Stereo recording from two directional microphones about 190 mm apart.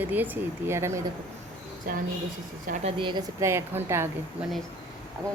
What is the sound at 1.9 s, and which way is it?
A woman's voice, 45° right (ahead or behind).